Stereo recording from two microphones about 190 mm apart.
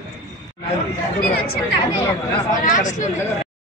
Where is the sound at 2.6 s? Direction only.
40° left (ahead or behind).